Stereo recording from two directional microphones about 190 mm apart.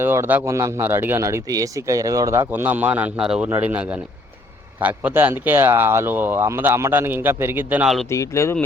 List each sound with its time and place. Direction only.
0.0 s speech: 10° right (ahead or behind)
8.1 s speech: 15° left (ahead or behind)